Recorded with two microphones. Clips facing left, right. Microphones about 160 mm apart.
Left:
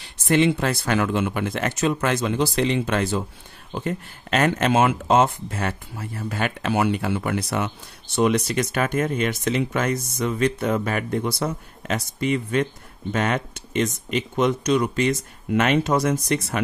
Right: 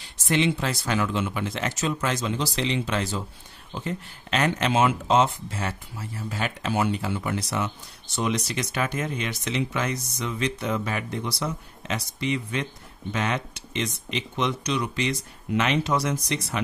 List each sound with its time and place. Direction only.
0.3 s speech: 55° left (ahead or behind)